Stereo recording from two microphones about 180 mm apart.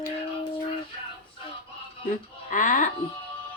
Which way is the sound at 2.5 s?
45° left (ahead or behind).